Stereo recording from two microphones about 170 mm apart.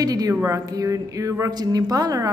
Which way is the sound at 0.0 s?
20° right (ahead or behind).